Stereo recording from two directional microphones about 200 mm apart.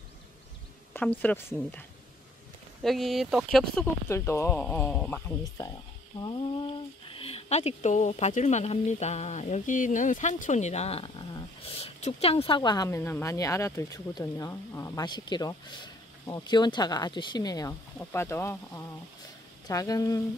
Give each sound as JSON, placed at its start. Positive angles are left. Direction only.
{"t": 0.9, "sound": "speech", "side_deg": 10}
{"t": 4.1, "sound": "speech", "side_deg": 15}
{"t": 6.1, "sound": "speech", "side_deg": 25}